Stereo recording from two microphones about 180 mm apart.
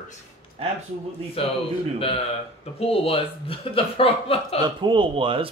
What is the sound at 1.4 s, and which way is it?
Speech, 30° left (ahead or behind).